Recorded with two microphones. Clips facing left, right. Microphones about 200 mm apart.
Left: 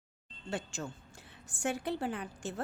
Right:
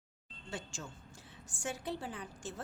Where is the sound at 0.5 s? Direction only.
60° left (ahead or behind).